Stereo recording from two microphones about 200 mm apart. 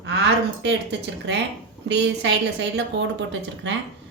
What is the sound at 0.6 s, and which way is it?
A woman's voice, 60° right (ahead or behind).